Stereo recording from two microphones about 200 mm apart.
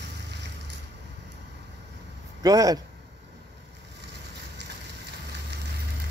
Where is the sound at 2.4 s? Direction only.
20° right (ahead or behind).